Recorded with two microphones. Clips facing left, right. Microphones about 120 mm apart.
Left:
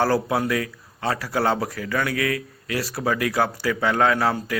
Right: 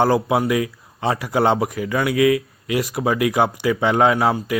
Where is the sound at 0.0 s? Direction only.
15° right (ahead or behind).